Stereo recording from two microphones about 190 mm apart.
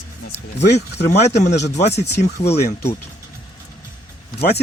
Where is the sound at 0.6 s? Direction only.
65° left (ahead or behind).